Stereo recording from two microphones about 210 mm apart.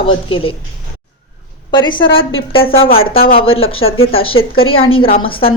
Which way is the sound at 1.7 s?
20° left (ahead or behind).